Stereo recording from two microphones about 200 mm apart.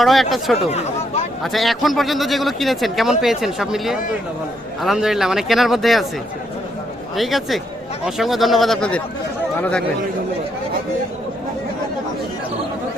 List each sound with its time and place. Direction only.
0.0 s speech: centre (ahead or behind)
0.7 s speech: 35° left (ahead or behind)
1.5 s speech: centre (ahead or behind)
7.2 s speech: centre (ahead or behind)